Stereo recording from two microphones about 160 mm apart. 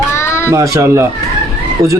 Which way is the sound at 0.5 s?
20° right (ahead or behind).